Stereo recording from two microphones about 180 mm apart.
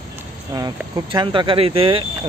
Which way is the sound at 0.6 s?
20° right (ahead or behind).